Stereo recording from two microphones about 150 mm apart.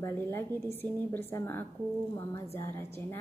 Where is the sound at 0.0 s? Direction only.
15° left (ahead or behind).